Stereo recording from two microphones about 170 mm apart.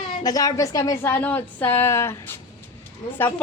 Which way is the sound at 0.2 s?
20° left (ahead or behind).